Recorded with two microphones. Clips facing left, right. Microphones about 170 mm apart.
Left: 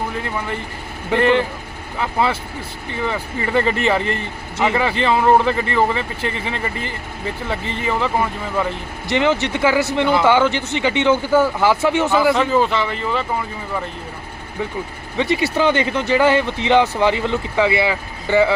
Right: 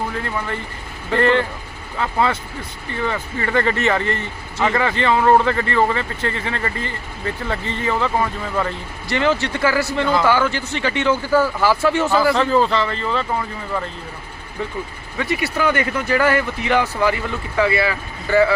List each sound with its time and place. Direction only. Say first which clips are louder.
1.1 s speech: left 1 dB; 15° left (ahead or behind)
12.5 s a man's voice: even; 5° left (ahead or behind)
15.2 s speech: left 3 dB; 25° left (ahead or behind)